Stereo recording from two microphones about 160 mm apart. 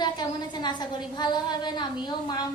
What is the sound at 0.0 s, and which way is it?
A woman's voice, 25° left (ahead or behind).